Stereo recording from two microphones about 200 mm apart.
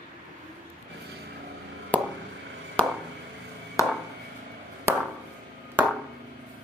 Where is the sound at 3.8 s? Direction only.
15° left (ahead or behind).